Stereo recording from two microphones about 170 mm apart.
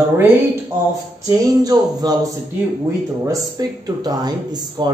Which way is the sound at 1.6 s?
20° right (ahead or behind).